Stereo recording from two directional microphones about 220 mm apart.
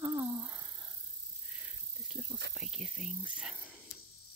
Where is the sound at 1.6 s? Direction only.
5° right (ahead or behind).